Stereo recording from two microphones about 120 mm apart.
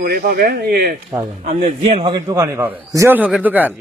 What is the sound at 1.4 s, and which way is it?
Speech, 70° right (ahead or behind).